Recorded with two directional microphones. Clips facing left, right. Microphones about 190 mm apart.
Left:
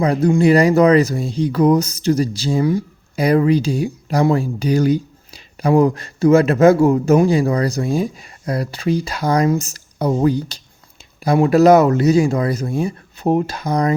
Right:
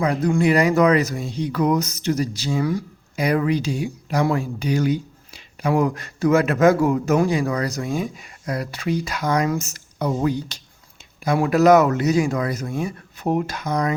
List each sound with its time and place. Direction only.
0.0 s speech: 30° left (ahead or behind)